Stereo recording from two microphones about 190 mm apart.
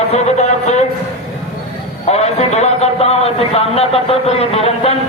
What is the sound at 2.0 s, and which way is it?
A man's voice, 35° left (ahead or behind).